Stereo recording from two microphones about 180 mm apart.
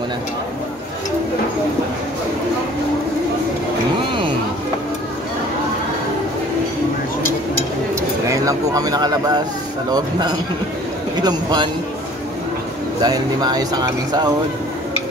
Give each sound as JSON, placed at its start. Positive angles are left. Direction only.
{"t": 7.9, "sound": "speech", "side_deg": -20}
{"t": 13.0, "sound": "speech", "side_deg": -25}